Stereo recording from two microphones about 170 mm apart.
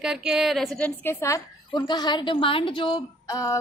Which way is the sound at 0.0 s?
5° right (ahead or behind).